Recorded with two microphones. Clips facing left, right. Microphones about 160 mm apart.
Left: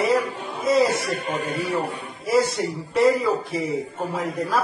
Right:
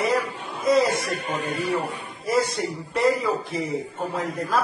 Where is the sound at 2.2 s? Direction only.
Centre (ahead or behind).